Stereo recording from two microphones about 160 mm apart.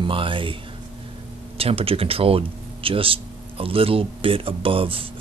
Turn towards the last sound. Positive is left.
turn(degrees=-35)  # may be behind; listen again after turning